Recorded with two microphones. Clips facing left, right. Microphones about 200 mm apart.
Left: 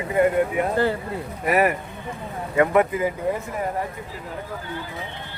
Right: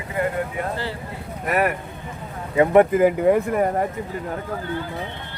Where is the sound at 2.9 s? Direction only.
60° right (ahead or behind).